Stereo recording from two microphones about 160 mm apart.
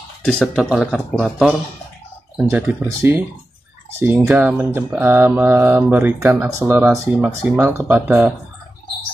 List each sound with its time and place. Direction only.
0.2 s speech: 5° left (ahead or behind)